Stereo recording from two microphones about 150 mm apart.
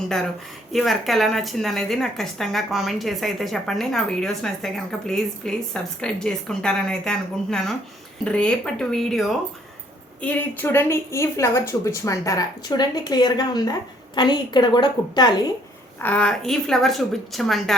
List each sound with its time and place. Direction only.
0.7 s a woman's voice: centre (ahead or behind); by 15.3 s 30° left (ahead or behind)
16.0 s a woman's voice: 10° left (ahead or behind)